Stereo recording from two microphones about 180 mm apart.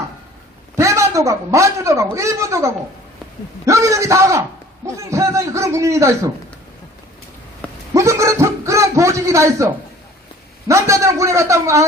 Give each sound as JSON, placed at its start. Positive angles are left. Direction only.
{"t": 0.8, "sound": "a man's voice", "side_deg": -15}
{"t": 7.9, "sound": "a sound", "side_deg": -15}
{"t": 10.7, "sound": "a man's voice", "side_deg": -15}